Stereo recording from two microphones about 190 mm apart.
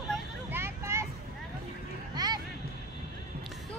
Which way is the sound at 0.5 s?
10° right (ahead or behind).